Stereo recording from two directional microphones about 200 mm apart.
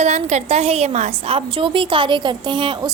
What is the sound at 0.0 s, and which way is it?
A woman's voice, 35° right (ahead or behind).